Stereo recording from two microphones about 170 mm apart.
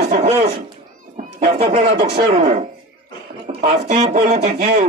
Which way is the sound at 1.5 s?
35° right (ahead or behind).